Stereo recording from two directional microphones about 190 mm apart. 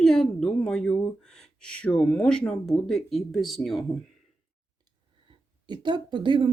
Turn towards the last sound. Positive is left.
turn(degrees=-25)  # may be behind; listen again after turning